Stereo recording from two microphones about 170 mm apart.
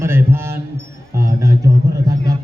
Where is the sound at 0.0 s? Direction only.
15° right (ahead or behind).